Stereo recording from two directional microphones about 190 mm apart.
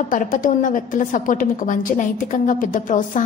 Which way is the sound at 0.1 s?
45° left (ahead or behind).